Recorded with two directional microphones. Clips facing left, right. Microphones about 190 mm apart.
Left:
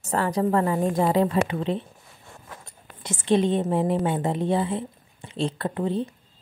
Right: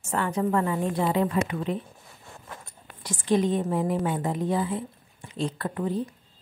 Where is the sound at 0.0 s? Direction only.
35° left (ahead or behind).